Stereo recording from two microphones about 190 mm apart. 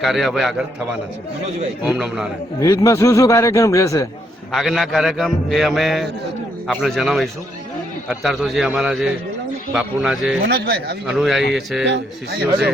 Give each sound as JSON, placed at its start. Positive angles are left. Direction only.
{"t": 0.0, "sound": "a man's voice", "side_deg": 0}
{"t": 1.8, "sound": "a man's voice", "side_deg": -5}
{"t": 2.6, "sound": "a man's voice", "side_deg": 15}
{"t": 4.5, "sound": "a man's voice", "side_deg": 0}
{"t": 10.4, "sound": "speech", "side_deg": -60}
{"t": 11.0, "sound": "a man's voice", "side_deg": 0}
{"t": 11.9, "sound": "speech", "side_deg": -60}